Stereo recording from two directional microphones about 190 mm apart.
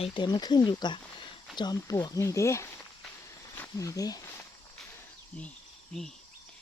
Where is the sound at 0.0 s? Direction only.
25° left (ahead or behind).